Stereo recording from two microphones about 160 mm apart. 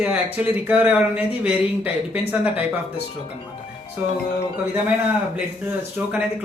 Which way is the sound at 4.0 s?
10° right (ahead or behind).